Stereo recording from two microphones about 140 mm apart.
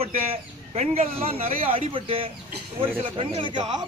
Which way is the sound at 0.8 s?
45° right (ahead or behind).